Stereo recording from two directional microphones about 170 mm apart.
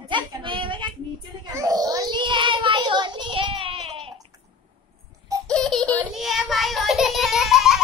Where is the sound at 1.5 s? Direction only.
20° right (ahead or behind).